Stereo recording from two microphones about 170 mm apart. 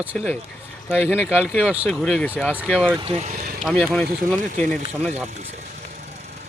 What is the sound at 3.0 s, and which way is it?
Speech, 40° right (ahead or behind).